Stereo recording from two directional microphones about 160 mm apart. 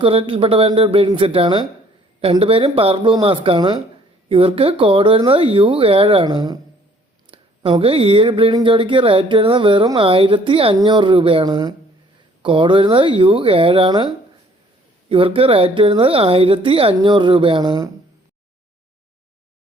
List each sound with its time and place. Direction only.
0.0 s speech: 35° right (ahead or behind)
15.1 s speech: 35° right (ahead or behind)